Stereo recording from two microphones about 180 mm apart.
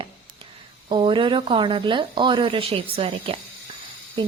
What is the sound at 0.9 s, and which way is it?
A woman's voice, 25° right (ahead or behind).